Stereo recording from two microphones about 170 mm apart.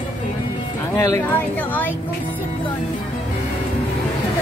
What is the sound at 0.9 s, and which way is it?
Speech, 15° left (ahead or behind).